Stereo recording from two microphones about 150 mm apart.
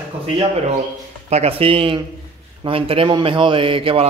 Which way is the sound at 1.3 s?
40° right (ahead or behind).